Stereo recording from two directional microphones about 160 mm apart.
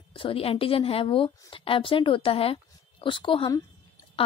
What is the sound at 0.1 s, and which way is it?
A woman's voice, 35° left (ahead or behind).